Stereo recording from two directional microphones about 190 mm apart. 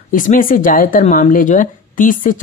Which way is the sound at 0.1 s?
45° left (ahead or behind).